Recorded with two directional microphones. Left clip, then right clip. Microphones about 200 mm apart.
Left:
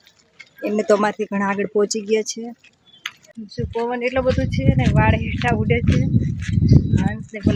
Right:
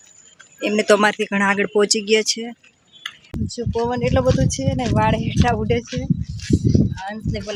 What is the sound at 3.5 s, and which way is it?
Speech, 15° right (ahead or behind).